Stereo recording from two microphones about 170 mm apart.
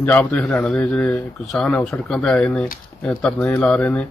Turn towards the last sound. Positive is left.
turn(degrees=10)  # may be behind; listen again after turning